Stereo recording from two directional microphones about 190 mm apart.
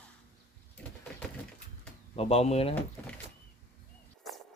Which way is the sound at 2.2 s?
30° left (ahead or behind).